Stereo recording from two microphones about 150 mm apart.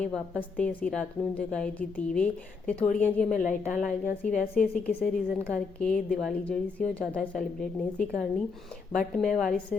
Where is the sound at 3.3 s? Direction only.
60° left (ahead or behind).